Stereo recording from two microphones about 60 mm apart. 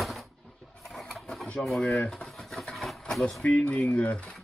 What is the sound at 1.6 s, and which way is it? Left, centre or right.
Speech, centre.